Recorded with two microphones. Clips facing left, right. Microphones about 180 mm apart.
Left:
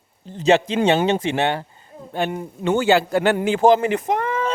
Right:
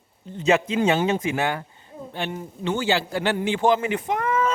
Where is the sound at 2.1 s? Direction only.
50° left (ahead or behind).